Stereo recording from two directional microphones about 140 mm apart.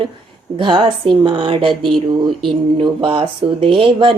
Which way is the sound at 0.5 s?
35° right (ahead or behind).